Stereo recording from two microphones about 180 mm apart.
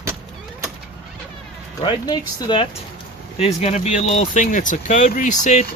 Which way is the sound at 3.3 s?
35° left (ahead or behind).